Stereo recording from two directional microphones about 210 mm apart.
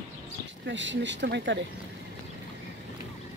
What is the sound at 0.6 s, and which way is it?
Speech, 60° right (ahead or behind).